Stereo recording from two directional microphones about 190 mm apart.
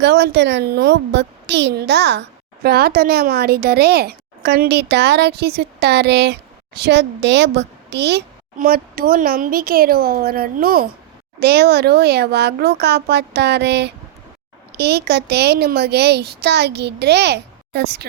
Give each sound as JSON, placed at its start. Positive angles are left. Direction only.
{"t": 0.0, "sound": "a woman's voice", "side_deg": -65}
{"t": 8.5, "sound": "a woman's voice", "side_deg": -50}